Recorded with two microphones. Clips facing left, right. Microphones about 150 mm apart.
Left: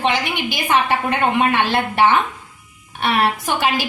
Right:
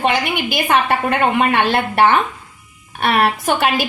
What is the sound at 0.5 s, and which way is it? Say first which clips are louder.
A woman's voice: right 2 dB; 60° right (ahead or behind).